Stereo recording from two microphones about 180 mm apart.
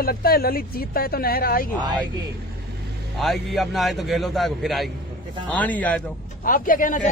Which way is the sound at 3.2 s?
Centre (ahead or behind).